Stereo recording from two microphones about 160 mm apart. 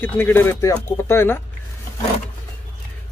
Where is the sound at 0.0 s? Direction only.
15° left (ahead or behind).